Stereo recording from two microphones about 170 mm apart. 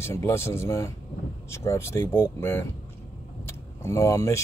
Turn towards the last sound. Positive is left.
turn(degrees=20)  # may be behind; listen again after turning